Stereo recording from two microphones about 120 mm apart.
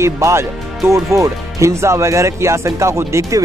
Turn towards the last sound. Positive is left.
turn(degrees=-25)  # may be behind; listen again after turning